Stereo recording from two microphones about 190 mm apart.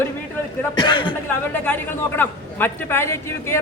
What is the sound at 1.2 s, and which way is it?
A man's voice, 10° left (ahead or behind).